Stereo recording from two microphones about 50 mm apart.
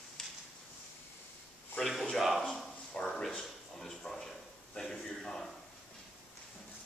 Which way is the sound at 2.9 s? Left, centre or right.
Centre.